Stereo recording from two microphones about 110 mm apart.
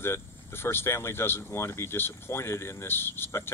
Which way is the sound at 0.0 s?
20° left (ahead or behind).